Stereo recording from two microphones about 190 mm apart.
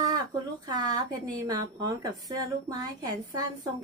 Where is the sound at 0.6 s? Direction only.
20° right (ahead or behind).